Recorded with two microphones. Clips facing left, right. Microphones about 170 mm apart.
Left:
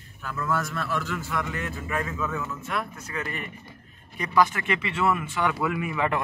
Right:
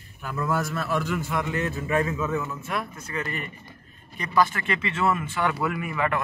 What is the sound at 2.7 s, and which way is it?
Speech, centre (ahead or behind).